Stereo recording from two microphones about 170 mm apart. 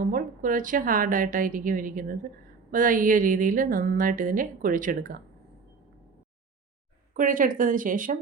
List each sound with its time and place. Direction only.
0.0 s a woman's voice: 55° right (ahead or behind)
7.1 s a woman's voice: 50° right (ahead or behind)